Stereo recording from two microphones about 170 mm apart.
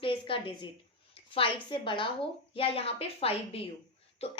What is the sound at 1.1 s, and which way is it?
A woman's voice, 30° left (ahead or behind).